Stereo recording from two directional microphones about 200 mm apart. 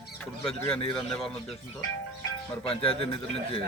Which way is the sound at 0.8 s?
20° left (ahead or behind).